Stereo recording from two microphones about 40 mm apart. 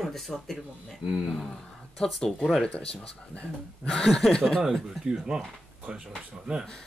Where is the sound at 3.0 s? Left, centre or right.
Left.